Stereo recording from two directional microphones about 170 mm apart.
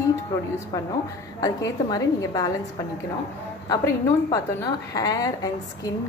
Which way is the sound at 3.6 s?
20° left (ahead or behind).